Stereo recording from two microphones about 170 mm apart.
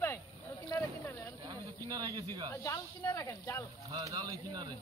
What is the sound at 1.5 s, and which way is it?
Speech, 25° right (ahead or behind).